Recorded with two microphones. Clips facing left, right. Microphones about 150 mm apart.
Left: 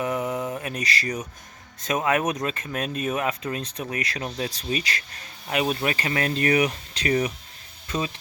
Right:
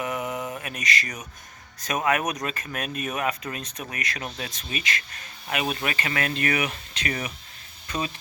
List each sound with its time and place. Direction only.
0.0 s mantra: 30° left (ahead or behind)
1.8 s speech: 25° left (ahead or behind)